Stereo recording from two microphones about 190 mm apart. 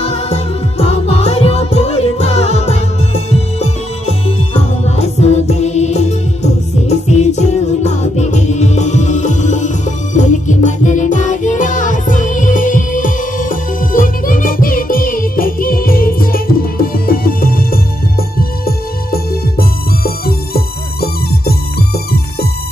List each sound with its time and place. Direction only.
0.0 s music: 35° left (ahead or behind); by 17.7 s 50° left (ahead or behind)
20.2 s music: 55° left (ahead or behind)